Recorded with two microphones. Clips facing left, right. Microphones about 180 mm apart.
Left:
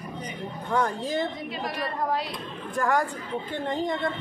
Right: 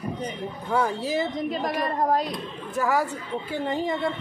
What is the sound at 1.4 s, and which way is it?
Speech, 45° right (ahead or behind).